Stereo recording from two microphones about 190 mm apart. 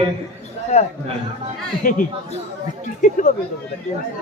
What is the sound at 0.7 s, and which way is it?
Speech, 35° left (ahead or behind).